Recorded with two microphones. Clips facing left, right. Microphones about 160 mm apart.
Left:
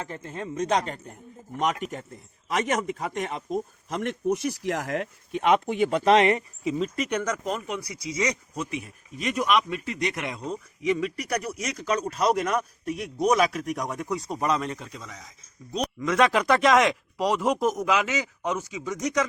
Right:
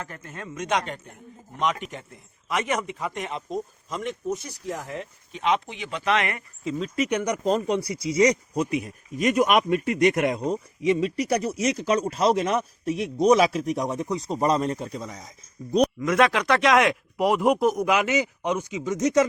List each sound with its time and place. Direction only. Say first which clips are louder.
0.0 s speech: left 3 dB; 25° left (ahead or behind); by 3.2 s 45° left (ahead or behind)
3.9 s speech: left 3 dB; 75° left (ahead or behind); by 6.1 s 45° left (ahead or behind)
6.1 s speech: left 7 dB; 30° left (ahead or behind)
6.7 s speech: left 1 dB; centre (ahead or behind)
7.1 s speech: right 4 dB; 10° right (ahead or behind)
7.4 s speech: right 7 dB; 35° right (ahead or behind)
16.1 s speech: left 1 dB; centre (ahead or behind)
18.4 s speech: right 3 dB; 20° right (ahead or behind)